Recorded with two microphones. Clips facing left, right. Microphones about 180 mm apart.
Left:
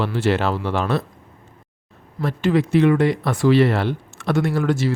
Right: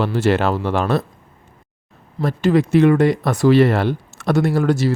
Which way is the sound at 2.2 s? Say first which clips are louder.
Right 3 dB; 40° right (ahead or behind).